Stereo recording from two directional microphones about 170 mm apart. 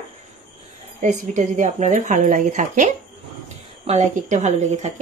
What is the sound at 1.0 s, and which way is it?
Speech, 45° right (ahead or behind).